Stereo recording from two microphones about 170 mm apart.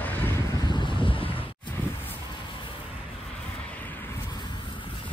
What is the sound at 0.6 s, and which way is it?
Wind noise, 30° left (ahead or behind).